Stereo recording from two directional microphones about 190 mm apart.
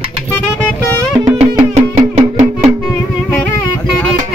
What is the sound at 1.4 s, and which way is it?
Music, 35° right (ahead or behind).